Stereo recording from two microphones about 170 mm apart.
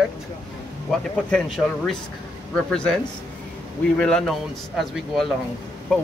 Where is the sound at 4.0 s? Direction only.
5° left (ahead or behind).